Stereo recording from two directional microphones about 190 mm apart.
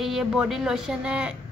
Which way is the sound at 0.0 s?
Centre (ahead or behind).